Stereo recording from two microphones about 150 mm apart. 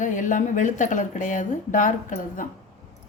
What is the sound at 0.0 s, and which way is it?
A woman's voice, 60° left (ahead or behind).